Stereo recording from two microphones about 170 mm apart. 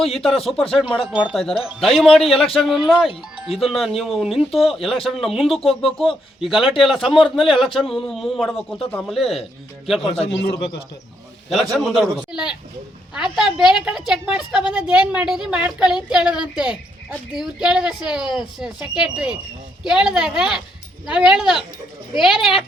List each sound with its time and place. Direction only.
0.0 s a woman's voice: centre (ahead or behind)
10.0 s a man's voice: 35° left (ahead or behind)
11.7 s a woman's voice: 5° right (ahead or behind)